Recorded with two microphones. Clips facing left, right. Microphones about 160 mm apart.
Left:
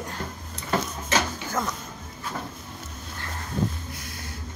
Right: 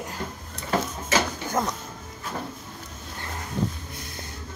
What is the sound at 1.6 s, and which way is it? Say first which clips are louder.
Speech: right 3 dB; 25° right (ahead or behind).